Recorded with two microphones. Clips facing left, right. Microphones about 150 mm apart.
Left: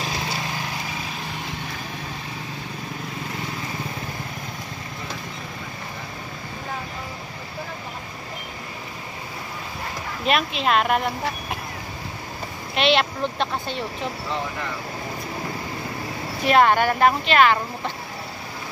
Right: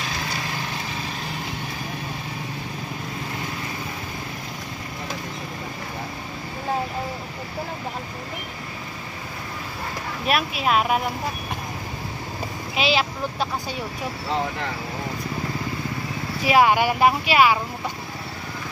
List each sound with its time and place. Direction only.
10.2 s speech: 5° right (ahead or behind)
12.7 s speech: 5° right (ahead or behind)
16.4 s speech: 10° right (ahead or behind)